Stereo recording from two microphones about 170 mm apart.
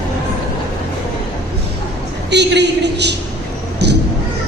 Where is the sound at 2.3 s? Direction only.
90° right.